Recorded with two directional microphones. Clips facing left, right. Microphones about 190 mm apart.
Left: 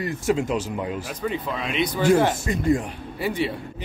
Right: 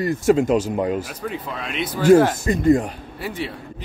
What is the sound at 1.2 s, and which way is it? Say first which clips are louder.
Speech: left 2 dB; centre (ahead or behind).